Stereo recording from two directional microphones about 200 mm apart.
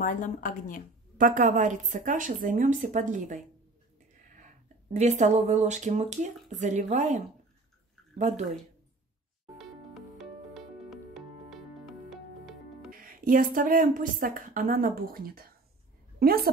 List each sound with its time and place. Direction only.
0.0 s speech: 40° left (ahead or behind)
1.2 s speech: 40° right (ahead or behind)
4.9 s speech: 35° right (ahead or behind)
9.6 s music: centre (ahead or behind)
13.0 s a woman's voice: 45° right (ahead or behind)